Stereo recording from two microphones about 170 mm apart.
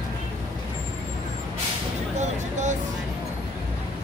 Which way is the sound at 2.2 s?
45° right (ahead or behind).